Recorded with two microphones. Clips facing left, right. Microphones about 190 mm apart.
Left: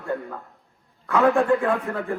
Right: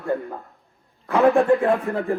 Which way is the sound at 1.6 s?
20° right (ahead or behind).